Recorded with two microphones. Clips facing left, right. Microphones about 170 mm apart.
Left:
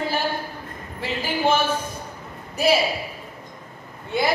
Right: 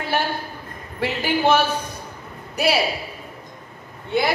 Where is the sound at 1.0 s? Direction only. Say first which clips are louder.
Right 3 dB; 70° right (ahead or behind).